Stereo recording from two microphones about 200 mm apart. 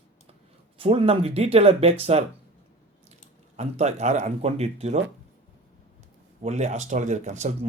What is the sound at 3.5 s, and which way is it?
Speech, 35° right (ahead or behind).